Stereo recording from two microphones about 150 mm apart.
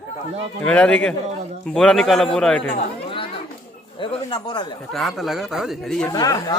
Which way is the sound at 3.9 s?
35° left (ahead or behind).